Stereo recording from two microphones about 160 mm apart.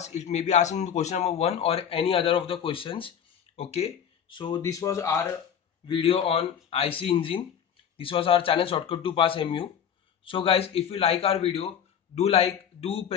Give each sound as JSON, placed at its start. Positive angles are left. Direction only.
{"t": 0.0, "sound": "speech", "side_deg": 45}
{"t": 5.9, "sound": "speech", "side_deg": 35}